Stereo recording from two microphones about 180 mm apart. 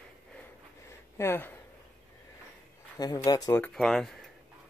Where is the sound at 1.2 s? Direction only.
15° left (ahead or behind).